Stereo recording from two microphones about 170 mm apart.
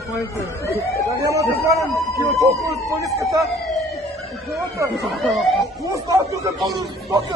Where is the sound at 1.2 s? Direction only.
20° right (ahead or behind).